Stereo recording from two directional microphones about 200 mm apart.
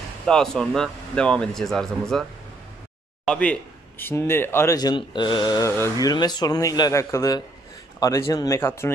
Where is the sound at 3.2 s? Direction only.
5° left (ahead or behind).